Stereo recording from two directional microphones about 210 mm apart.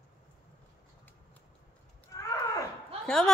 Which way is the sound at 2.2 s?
15° left (ahead or behind).